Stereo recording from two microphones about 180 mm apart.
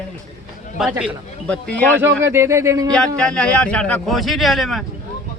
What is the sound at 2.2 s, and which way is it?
Speech, 15° right (ahead or behind).